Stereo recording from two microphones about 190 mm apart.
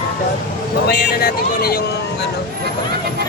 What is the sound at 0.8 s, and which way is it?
Speech, 55° left (ahead or behind).